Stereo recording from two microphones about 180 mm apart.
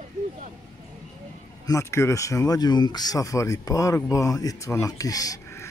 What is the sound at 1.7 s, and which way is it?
Speech, 15° left (ahead or behind).